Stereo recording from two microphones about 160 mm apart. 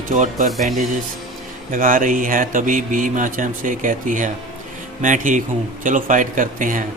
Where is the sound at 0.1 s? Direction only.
55° right (ahead or behind).